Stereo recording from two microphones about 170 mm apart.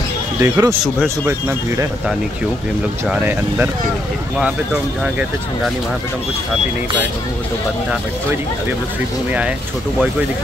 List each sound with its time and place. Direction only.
0.4 s speech: 15° right (ahead or behind)
3.1 s speech: 10° right (ahead or behind)